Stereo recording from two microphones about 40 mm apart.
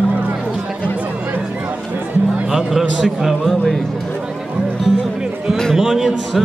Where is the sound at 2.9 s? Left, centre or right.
Centre.